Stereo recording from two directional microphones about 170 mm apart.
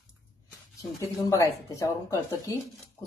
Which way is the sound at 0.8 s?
20° left (ahead or behind).